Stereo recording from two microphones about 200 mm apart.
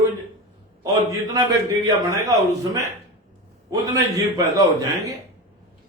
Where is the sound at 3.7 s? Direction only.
15° right (ahead or behind).